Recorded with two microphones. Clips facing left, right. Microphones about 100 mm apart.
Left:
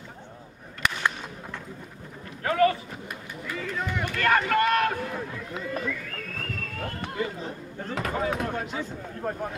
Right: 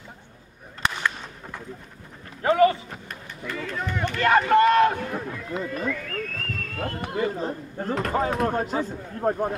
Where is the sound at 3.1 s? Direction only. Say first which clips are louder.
Right 1 dB; 5° left (ahead or behind).